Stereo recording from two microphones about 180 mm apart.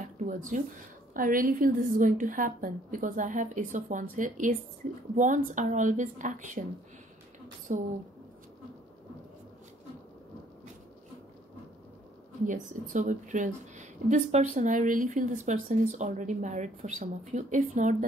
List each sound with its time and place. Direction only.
0.2 s a woman's voice: 45° right (ahead or behind)
7.7 s a woman's voice: 45° right (ahead or behind)
12.4 s a woman's voice: 45° right (ahead or behind)